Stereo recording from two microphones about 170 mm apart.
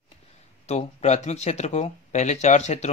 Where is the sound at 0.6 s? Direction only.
40° left (ahead or behind).